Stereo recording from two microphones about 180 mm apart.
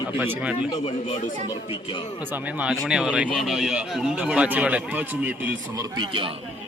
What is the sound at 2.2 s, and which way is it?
A man's voice, 10° right (ahead or behind).